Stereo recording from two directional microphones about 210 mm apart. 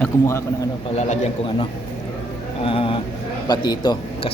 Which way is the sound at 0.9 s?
35° left (ahead or behind).